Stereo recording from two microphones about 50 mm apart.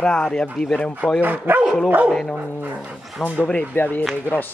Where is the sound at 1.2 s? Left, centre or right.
Right.